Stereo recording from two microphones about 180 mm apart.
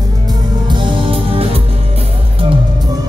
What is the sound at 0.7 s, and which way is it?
Music, 30° right (ahead or behind).